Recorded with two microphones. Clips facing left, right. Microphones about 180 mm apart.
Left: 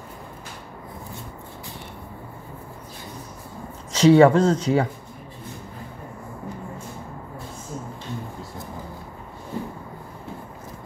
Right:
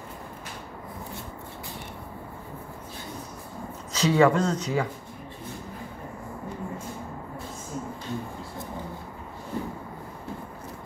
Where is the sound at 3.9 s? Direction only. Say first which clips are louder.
Left 7 dB; 30° left (ahead or behind).